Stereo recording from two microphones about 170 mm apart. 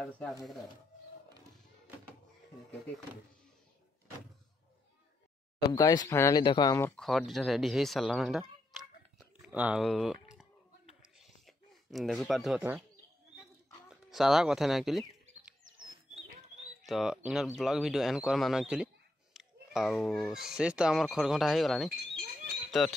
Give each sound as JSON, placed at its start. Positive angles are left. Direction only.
{"t": 0.0, "sound": "speech", "side_deg": 5}
{"t": 5.6, "sound": "speech", "side_deg": 25}
{"t": 7.0, "sound": "speech", "side_deg": 0}
{"t": 9.2, "sound": "a sound", "side_deg": -10}
{"t": 13.8, "sound": "bird", "side_deg": 0}
{"t": 16.8, "sound": "speech", "side_deg": 0}